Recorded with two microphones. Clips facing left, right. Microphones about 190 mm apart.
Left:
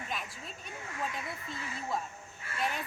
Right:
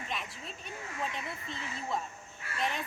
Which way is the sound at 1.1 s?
5° left (ahead or behind).